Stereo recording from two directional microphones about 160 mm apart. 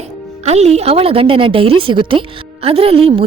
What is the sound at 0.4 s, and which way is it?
A woman's voice, 45° right (ahead or behind).